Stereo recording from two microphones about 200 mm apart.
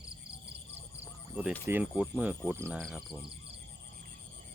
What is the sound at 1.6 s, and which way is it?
Speech, 10° right (ahead or behind).